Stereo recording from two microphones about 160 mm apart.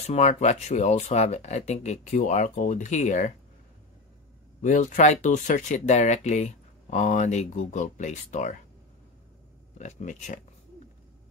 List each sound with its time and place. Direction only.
0.0 s speech: 45° left (ahead or behind)
4.6 s speech: 50° left (ahead or behind)
9.8 s speech: 45° left (ahead or behind)